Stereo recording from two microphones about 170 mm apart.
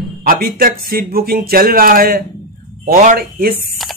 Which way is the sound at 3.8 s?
Centre (ahead or behind).